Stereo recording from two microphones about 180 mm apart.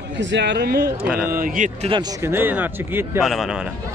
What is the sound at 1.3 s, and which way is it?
Speech, 50° right (ahead or behind).